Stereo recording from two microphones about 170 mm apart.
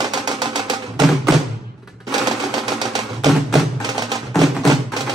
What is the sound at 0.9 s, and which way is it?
Music, centre (ahead or behind).